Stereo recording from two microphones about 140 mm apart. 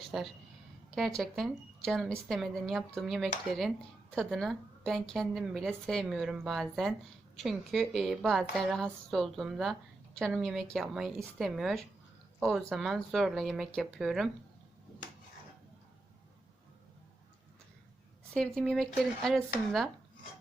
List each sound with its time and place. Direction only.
0.1 s a woman's voice: centre (ahead or behind)
18.3 s a woman's voice: 5° left (ahead or behind)